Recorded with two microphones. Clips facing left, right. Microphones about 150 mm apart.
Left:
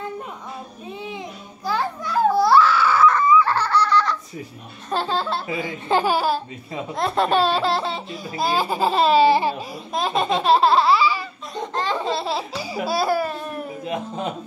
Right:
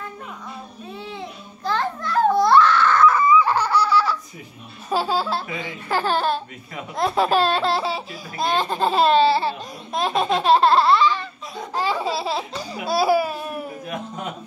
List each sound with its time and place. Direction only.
1.0 s babbling: 15° left (ahead or behind)
3.1 s a sound: 10° right (ahead or behind)
4.8 s speech: 5° right (ahead or behind)
5.9 s speech: 20° left (ahead or behind)
6.1 s speech: 5° left (ahead or behind)
9.2 s babbling: 15° left (ahead or behind)
9.9 s speech: centre (ahead or behind)
11.5 s laughter: 10° right (ahead or behind)
12.8 s babbling: 5° right (ahead or behind)